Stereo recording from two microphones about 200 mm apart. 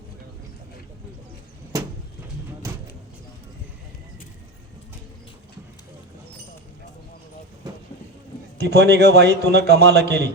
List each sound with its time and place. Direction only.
8.5 s a man's voice: 55° right (ahead or behind)